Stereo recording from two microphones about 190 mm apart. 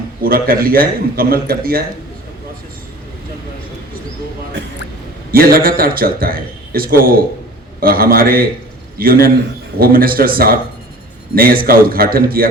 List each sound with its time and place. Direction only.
0.2 s a man's voice: 50° right (ahead or behind)
5.3 s a man's voice: 50° right (ahead or behind)